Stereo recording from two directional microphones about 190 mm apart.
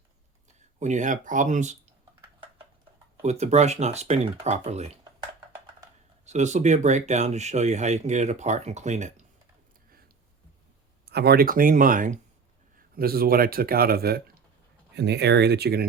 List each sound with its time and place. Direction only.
0.8 s speech: 40° right (ahead or behind)
3.2 s speech: 35° right (ahead or behind)
6.2 s speech: 35° right (ahead or behind)
11.0 s speech: 55° right (ahead or behind)